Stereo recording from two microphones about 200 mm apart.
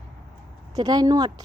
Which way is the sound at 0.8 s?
20° right (ahead or behind).